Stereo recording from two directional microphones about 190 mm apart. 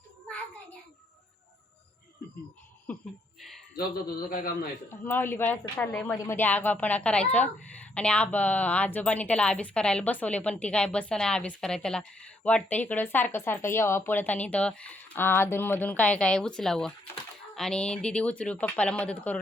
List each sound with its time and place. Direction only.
4.3 s a man's voice: 50° left (ahead or behind)
4.9 s a woman's voice: 10° left (ahead or behind)